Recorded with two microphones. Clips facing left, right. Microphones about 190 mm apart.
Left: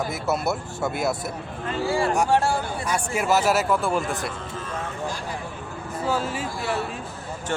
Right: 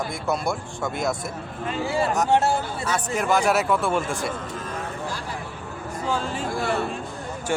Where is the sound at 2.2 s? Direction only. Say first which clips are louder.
Right 1 dB; 20° right (ahead or behind).